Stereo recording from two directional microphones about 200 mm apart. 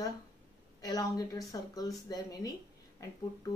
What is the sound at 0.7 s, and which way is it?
A woman's voice, 20° left (ahead or behind).